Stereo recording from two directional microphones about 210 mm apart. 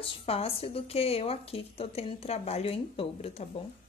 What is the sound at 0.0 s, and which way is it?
A woman's voice, 25° left (ahead or behind).